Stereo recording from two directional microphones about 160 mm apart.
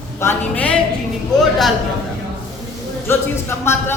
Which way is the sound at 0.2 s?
10° left (ahead or behind).